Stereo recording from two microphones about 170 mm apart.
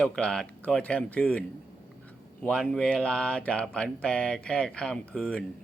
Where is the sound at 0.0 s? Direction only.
5° left (ahead or behind).